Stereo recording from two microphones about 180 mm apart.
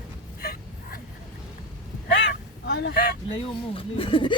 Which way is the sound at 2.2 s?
65° left (ahead or behind).